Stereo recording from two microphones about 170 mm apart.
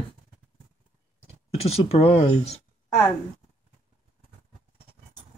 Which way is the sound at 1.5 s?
35° left (ahead or behind).